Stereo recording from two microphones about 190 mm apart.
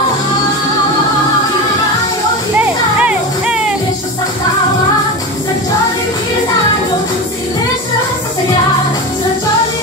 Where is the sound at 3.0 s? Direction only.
5° right (ahead or behind).